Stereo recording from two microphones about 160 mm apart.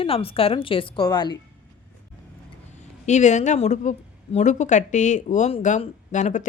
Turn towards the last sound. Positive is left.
turn(degrees=50)  # may be behind; listen again after turning